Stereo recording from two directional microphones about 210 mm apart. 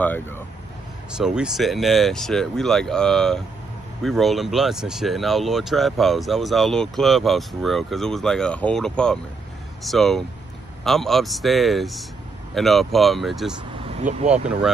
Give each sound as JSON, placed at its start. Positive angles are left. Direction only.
{"t": 0.0, "sound": "speech", "side_deg": 10}
{"t": 1.1, "sound": "speech", "side_deg": -5}
{"t": 13.8, "sound": "vehicle", "side_deg": -30}